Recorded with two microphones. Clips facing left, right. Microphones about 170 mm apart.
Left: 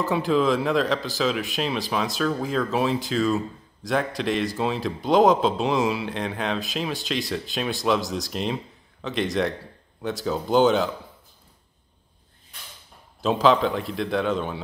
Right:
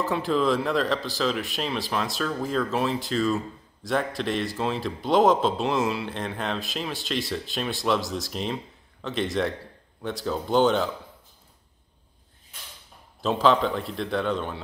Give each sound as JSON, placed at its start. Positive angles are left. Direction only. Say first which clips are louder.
{"t": 0.0, "sound": "a man's voice", "louder": "left 2 dB", "side_deg": 0}
{"t": 13.2, "sound": "a man's voice", "louder": "left 2 dB", "side_deg": 0}